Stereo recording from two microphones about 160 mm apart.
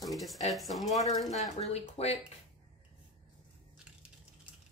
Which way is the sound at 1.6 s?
40° left (ahead or behind).